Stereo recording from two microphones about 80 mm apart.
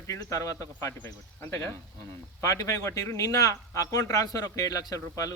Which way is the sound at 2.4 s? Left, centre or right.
Left.